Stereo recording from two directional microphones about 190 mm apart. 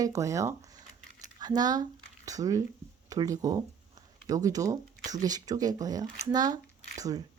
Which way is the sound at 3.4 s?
20° right (ahead or behind).